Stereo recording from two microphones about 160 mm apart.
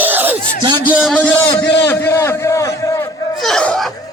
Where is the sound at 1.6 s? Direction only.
90° left.